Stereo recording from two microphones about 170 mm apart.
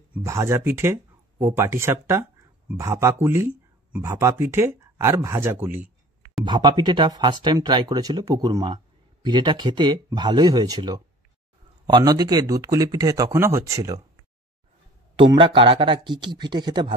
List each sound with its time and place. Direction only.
0.1 s speech: 15° right (ahead or behind)
6.4 s speech: 25° right (ahead or behind)
15.3 s speech: 30° right (ahead or behind)